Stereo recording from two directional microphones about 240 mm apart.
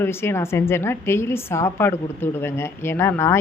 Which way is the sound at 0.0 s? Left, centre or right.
Centre.